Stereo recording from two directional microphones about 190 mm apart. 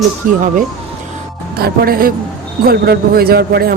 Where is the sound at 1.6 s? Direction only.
50° right (ahead or behind).